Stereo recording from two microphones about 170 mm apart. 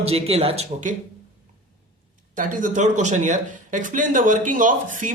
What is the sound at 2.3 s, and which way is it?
Speech, 50° right (ahead or behind).